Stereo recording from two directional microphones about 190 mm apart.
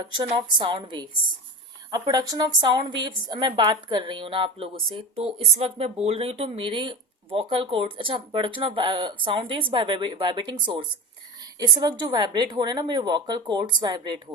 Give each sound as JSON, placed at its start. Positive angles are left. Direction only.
{"t": 0.1, "sound": "speech", "side_deg": -25}